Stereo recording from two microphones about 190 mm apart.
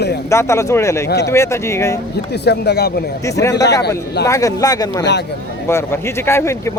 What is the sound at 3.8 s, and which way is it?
Speech, 60° left (ahead or behind).